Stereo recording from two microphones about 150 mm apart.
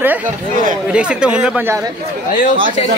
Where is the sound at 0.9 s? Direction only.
5° right (ahead or behind).